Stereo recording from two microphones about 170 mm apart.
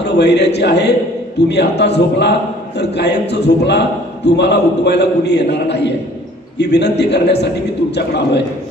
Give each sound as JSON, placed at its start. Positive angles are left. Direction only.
{"t": 0.0, "sound": "a man's voice", "side_deg": 80}